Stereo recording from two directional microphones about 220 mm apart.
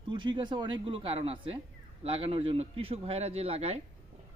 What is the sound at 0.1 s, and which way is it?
A man's voice, 20° right (ahead or behind).